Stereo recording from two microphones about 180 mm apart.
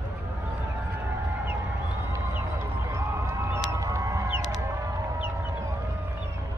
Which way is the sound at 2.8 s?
15° right (ahead or behind).